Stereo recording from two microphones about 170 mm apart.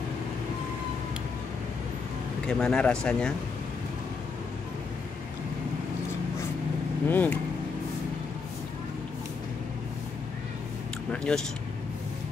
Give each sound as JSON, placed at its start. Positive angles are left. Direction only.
{"t": 2.4, "sound": "speech", "side_deg": 5}
{"t": 7.1, "sound": "speech", "side_deg": 10}
{"t": 11.1, "sound": "speech", "side_deg": 5}